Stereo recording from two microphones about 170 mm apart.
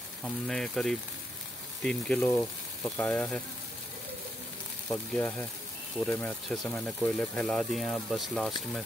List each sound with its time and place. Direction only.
0.2 s speech: centre (ahead or behind)
2.3 s frying: 15° left (ahead or behind)
4.8 s speech: 5° left (ahead or behind)